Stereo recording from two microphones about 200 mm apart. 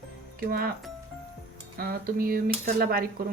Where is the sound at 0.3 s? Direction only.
50° right (ahead or behind).